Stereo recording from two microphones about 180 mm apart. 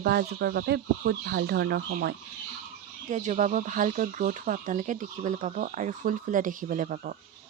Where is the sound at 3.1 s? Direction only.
40° right (ahead or behind).